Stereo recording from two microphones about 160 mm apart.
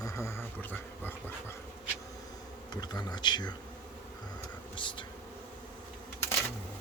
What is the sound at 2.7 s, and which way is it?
Speech, 25° left (ahead or behind).